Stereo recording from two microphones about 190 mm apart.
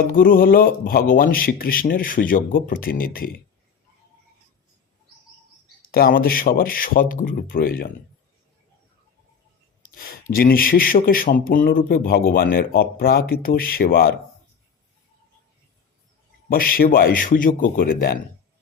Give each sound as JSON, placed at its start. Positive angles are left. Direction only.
{"t": 0.1, "sound": "speech", "side_deg": 50}
{"t": 5.8, "sound": "speech", "side_deg": 50}
{"t": 10.0, "sound": "speech", "side_deg": 50}
{"t": 16.5, "sound": "speech", "side_deg": 50}